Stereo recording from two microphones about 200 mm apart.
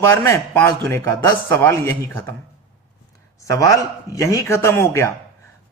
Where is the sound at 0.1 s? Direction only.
10° left (ahead or behind).